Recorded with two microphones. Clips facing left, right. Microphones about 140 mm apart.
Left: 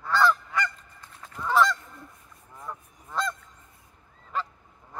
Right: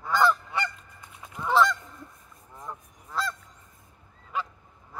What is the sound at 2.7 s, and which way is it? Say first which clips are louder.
Goose: left 1 dB; 20° right (ahead or behind).